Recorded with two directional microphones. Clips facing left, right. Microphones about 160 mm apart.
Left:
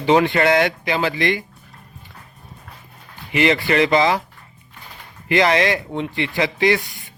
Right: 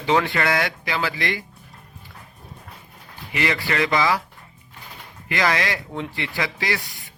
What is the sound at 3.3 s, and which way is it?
Speech, 20° left (ahead or behind).